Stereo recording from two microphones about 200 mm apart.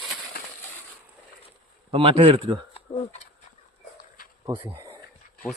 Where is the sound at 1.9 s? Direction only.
30° right (ahead or behind).